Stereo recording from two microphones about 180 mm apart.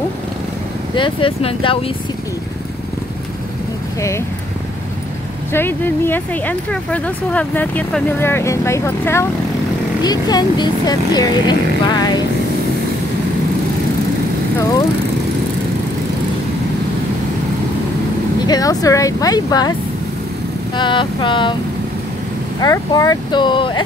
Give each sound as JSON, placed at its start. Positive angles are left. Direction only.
{"t": 0.9, "sound": "speech", "side_deg": 30}
{"t": 5.5, "sound": "speech", "side_deg": 10}
{"t": 18.5, "sound": "speech", "side_deg": 20}
{"t": 20.7, "sound": "speech", "side_deg": 25}
{"t": 22.6, "sound": "speech", "side_deg": 20}